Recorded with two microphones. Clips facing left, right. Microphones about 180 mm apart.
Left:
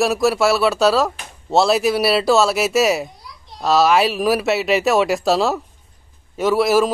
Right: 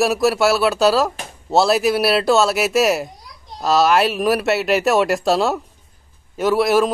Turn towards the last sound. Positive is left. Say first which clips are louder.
# even
turn(degrees=0)  # may be behind; listen again after turning